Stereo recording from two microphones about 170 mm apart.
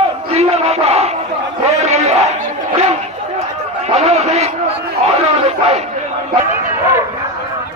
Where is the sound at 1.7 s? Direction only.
40° right (ahead or behind).